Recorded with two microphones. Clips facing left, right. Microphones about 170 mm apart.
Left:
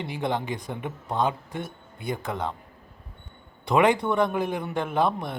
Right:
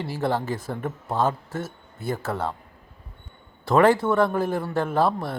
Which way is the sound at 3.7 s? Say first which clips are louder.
Right 3 dB; 15° left (ahead or behind).